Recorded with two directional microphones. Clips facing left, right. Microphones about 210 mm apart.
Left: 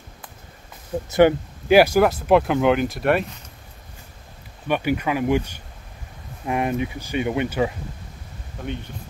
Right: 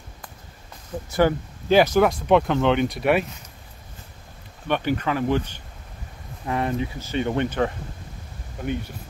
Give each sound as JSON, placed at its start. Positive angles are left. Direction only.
{"t": 1.0, "sound": "speech", "side_deg": 20}
{"t": 1.8, "sound": "speech", "side_deg": 5}
{"t": 4.6, "sound": "speech", "side_deg": 10}